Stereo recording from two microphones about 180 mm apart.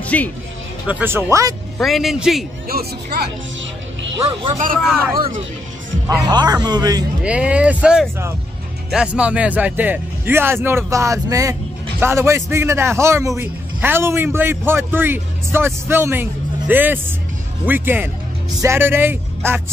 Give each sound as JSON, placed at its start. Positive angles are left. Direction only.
{"t": 0.0, "sound": "music", "side_deg": 10}
{"t": 0.8, "sound": "a man's voice", "side_deg": -10}
{"t": 1.8, "sound": "a man's voice", "side_deg": 0}
{"t": 2.7, "sound": "speech", "side_deg": -60}
{"t": 4.2, "sound": "speech", "side_deg": -30}
{"t": 5.1, "sound": "speech", "side_deg": -55}
{"t": 6.2, "sound": "speech", "side_deg": -20}
{"t": 7.2, "sound": "a man's voice", "side_deg": -5}